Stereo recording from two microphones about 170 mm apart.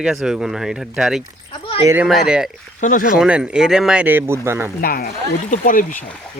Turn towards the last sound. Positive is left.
turn(degrees=50)  # may be behind; listen again after turning